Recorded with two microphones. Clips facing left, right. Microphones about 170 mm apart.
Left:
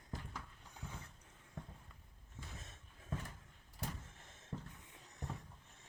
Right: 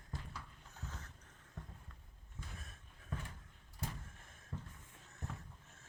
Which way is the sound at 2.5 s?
25° left (ahead or behind).